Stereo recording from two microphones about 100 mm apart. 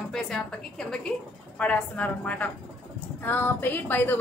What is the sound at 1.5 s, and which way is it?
A woman's voice, 15° left (ahead or behind).